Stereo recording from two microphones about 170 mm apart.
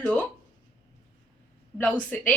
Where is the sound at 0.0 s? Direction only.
10° left (ahead or behind).